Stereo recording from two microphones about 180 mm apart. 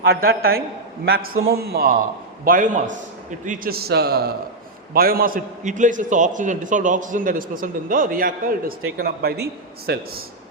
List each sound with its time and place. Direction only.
0.0 s a man's voice: 60° right (ahead or behind)
2.4 s a man's voice: 50° right (ahead or behind)